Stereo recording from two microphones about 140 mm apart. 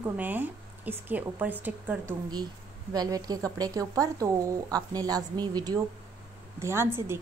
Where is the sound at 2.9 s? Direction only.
25° right (ahead or behind).